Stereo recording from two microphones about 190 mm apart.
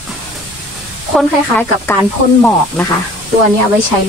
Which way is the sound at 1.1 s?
10° left (ahead or behind).